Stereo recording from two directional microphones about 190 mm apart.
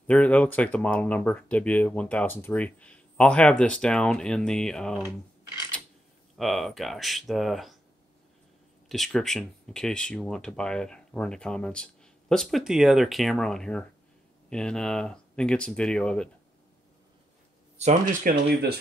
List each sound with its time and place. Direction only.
0.0 s speech: 5° left (ahead or behind)
6.3 s speech: centre (ahead or behind)
8.8 s speech: centre (ahead or behind)
17.7 s speech: 40° right (ahead or behind)